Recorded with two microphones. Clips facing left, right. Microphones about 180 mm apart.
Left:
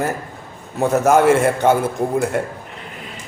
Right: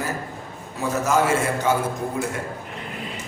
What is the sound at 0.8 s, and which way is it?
Speech, 60° left (ahead or behind).